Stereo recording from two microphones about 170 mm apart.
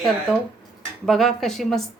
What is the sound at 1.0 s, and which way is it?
Speech, centre (ahead or behind).